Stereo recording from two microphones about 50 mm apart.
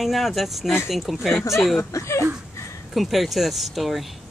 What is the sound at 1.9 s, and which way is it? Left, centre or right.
Speech, left.